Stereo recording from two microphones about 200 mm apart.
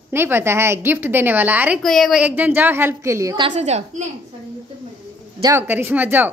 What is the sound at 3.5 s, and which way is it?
Speech, 35° right (ahead or behind).